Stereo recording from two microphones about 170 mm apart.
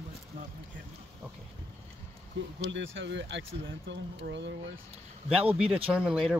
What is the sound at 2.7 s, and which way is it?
Speech, 90° right.